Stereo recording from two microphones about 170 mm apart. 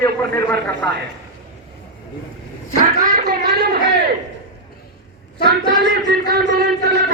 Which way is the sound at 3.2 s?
65° right (ahead or behind).